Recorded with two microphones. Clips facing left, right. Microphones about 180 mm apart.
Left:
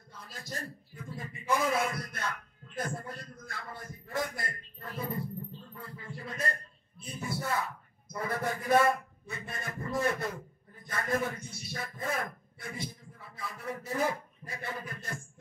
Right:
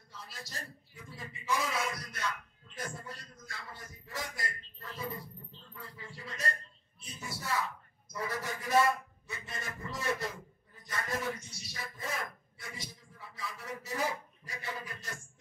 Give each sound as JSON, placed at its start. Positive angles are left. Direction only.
{"t": 0.1, "sound": "a man's voice", "side_deg": 55}